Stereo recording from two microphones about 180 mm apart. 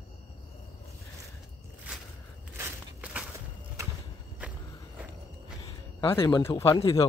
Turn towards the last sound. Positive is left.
turn(degrees=20)  # may be behind; listen again after turning